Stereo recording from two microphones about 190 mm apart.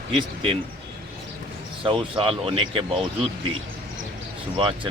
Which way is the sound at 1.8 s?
25° right (ahead or behind).